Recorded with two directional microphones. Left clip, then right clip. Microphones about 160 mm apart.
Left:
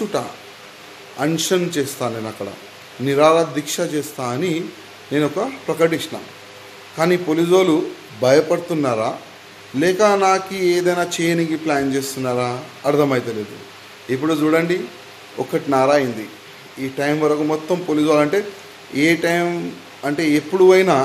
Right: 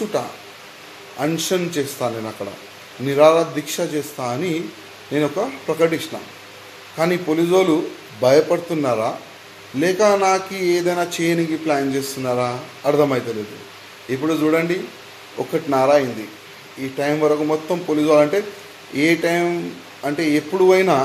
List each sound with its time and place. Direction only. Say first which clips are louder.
1.1 s a man's voice: left 2 dB; 25° left (ahead or behind)